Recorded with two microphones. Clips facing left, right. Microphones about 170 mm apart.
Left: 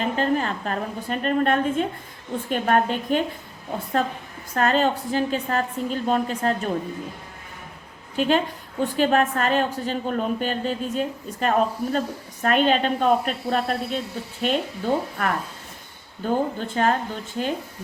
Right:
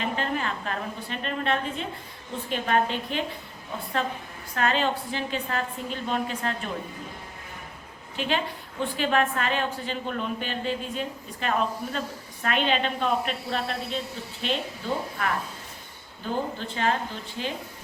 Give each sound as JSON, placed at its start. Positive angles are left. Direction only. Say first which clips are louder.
{"t": 0.2, "sound": "a woman's voice", "louder": "left 6 dB", "side_deg": 40}
{"t": 8.1, "sound": "a woman's voice", "louder": "left 7 dB", "side_deg": 45}